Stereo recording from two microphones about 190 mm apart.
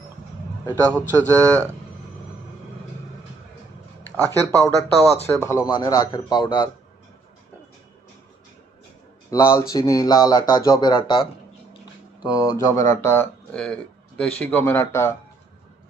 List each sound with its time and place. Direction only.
0.6 s speech: 10° left (ahead or behind)
1.4 s speech: 15° right (ahead or behind)
4.2 s speech: 10° left (ahead or behind)
9.3 s speech: 15° left (ahead or behind)